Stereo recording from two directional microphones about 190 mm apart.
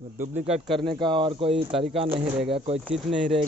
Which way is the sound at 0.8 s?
25° right (ahead or behind).